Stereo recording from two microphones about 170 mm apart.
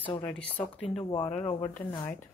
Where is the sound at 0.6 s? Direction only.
35° left (ahead or behind).